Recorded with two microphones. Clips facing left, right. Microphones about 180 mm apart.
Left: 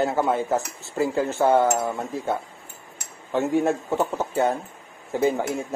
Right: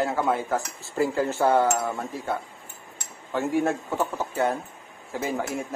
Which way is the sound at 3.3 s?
20° left (ahead or behind).